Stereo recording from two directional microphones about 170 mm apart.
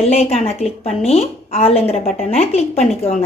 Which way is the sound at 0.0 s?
35° left (ahead or behind).